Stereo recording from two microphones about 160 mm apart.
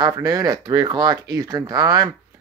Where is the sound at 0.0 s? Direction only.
25° right (ahead or behind).